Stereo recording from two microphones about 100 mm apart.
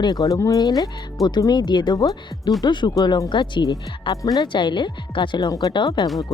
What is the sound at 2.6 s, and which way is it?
Speech, 50° left (ahead or behind).